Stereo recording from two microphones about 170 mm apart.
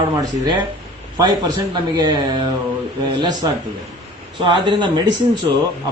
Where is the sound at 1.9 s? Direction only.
25° right (ahead or behind).